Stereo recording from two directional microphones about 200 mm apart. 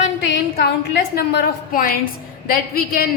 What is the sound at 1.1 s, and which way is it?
A woman's voice, 50° left (ahead or behind).